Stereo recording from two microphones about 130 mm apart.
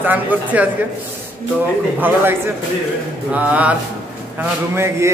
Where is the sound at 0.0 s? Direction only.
15° right (ahead or behind).